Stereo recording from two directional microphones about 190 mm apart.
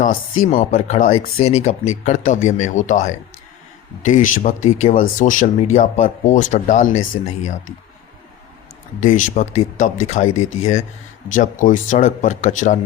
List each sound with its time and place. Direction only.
0.0 s speech: 40° left (ahead or behind)
9.0 s speech: 40° left (ahead or behind)